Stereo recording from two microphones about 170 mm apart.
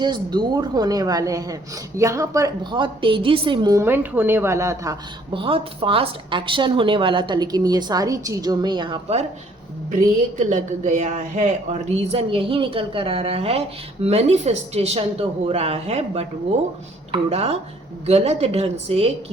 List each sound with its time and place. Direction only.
0.0 s speech: 25° right (ahead or behind)
5.3 s speech: 30° right (ahead or behind)
9.9 s speech: 45° right (ahead or behind)